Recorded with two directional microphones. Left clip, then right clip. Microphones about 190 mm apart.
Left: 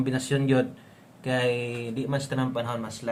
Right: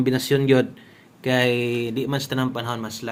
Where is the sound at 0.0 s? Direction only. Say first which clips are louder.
Right 7 dB; 35° right (ahead or behind).